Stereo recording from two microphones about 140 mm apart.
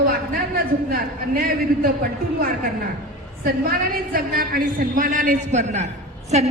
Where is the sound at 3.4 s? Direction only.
90° right.